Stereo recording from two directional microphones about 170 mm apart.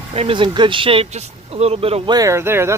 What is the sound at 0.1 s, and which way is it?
Speech, 35° right (ahead or behind).